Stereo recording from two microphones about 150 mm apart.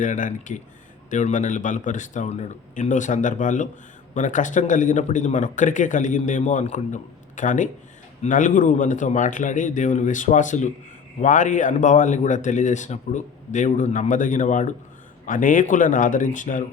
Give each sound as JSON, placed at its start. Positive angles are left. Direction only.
{"t": 0.0, "sound": "speech", "side_deg": 55}